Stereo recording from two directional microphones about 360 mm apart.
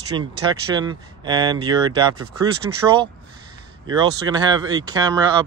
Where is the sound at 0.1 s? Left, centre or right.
Centre.